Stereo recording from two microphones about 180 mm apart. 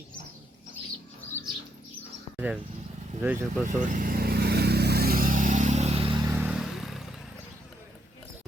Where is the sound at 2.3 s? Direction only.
5° right (ahead or behind).